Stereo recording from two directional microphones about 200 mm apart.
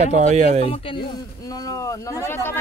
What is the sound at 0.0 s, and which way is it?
Speech, 35° right (ahead or behind).